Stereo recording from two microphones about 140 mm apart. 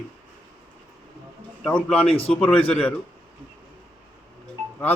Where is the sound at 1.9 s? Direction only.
45° left (ahead or behind).